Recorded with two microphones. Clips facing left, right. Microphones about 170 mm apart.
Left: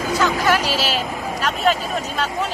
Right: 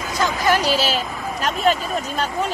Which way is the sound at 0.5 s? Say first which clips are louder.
Right 1 dB; 40° right (ahead or behind).